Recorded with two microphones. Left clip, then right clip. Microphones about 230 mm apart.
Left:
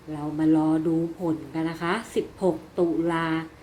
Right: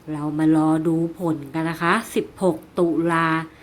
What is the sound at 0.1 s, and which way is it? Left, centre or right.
A woman's voice, right.